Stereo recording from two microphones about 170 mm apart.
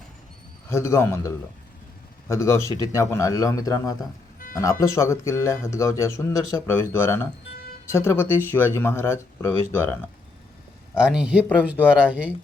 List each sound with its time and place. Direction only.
0.7 s speech: 15° left (ahead or behind)
2.3 s speech: 15° left (ahead or behind)
10.9 s speech: 5° right (ahead or behind)